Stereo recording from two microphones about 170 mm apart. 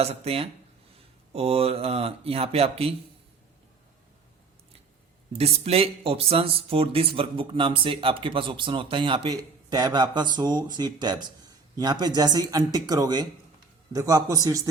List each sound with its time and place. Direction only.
0.0 s speech: 35° right (ahead or behind)
5.4 s speech: 35° right (ahead or behind); by 14.6 s 20° right (ahead or behind)